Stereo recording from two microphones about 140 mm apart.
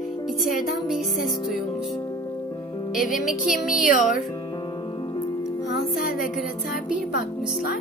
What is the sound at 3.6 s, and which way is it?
Speech, 85° left.